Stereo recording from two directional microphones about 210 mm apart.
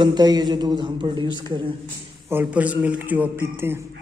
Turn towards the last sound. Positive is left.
turn(degrees=-10)  # may be behind; listen again after turning